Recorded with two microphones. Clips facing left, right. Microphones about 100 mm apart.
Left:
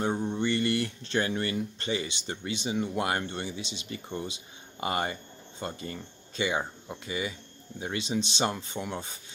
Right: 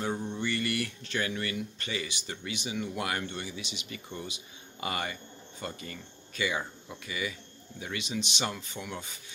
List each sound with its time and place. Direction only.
0.0 s speech: 30° left (ahead or behind)